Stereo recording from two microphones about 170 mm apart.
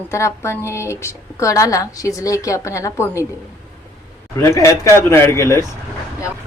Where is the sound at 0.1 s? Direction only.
15° left (ahead or behind).